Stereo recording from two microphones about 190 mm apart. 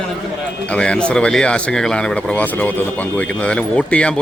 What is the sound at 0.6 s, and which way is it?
Speech, 5° left (ahead or behind).